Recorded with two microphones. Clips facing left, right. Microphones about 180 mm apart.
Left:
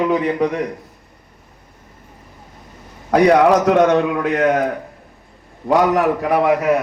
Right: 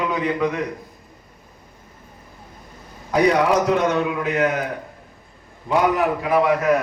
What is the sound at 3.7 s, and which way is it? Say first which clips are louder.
Speech: left 6 dB; 65° left (ahead or behind).